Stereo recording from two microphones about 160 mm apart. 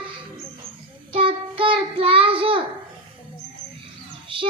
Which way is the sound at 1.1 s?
35° right (ahead or behind).